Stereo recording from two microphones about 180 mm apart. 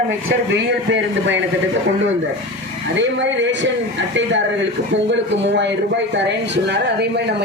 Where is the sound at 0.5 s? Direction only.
85° right.